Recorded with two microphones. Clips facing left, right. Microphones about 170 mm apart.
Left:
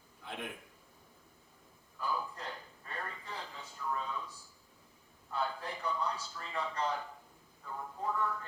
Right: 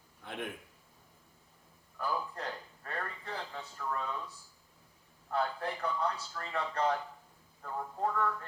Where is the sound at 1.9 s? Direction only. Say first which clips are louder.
Right 2 dB; 65° right (ahead or behind).